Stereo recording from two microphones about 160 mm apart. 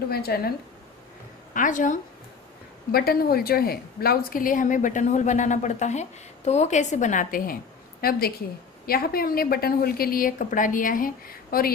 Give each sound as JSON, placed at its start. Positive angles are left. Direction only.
{"t": 0.1, "sound": "a woman's voice", "side_deg": 75}
{"t": 1.5, "sound": "a woman's voice", "side_deg": 55}
{"t": 2.9, "sound": "a woman's voice", "side_deg": 70}
{"t": 8.0, "sound": "a woman's voice", "side_deg": 70}